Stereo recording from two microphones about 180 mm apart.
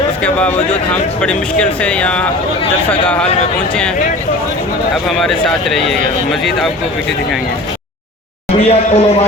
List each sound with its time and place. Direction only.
0.2 s speech: 5° left (ahead or behind)
5.0 s speech: centre (ahead or behind)
8.4 s speech: 35° left (ahead or behind)